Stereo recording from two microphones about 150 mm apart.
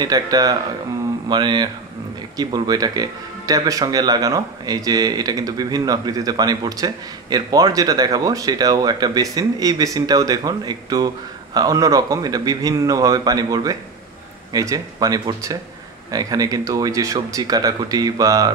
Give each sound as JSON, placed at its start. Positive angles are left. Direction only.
{"t": 0.0, "sound": "speech", "side_deg": -25}